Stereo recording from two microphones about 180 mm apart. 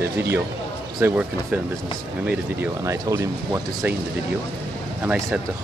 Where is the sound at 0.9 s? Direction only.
10° right (ahead or behind).